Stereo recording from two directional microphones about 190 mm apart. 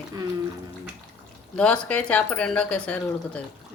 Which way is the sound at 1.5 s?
5° left (ahead or behind).